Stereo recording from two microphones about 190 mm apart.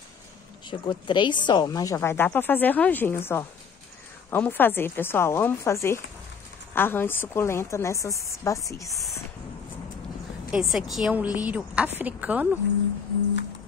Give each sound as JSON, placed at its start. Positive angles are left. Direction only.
{"t": 0.7, "sound": "a woman's voice", "side_deg": 25}
{"t": 10.5, "sound": "a woman's voice", "side_deg": 0}